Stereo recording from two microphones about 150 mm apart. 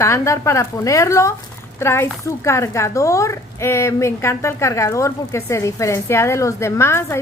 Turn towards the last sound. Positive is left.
turn(degrees=15)  # may be behind; listen again after turning